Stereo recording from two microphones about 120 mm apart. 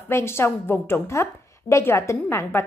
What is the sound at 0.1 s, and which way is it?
A woman's voice, 20° left (ahead or behind).